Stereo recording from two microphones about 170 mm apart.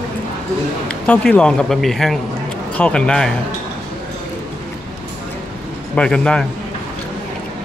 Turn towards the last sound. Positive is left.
turn(degrees=5)  # may be behind; listen again after turning